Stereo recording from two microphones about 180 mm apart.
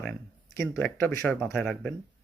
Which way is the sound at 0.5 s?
15° left (ahead or behind).